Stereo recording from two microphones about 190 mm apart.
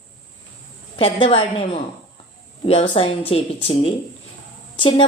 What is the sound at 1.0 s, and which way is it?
A woman's voice, 30° left (ahead or behind).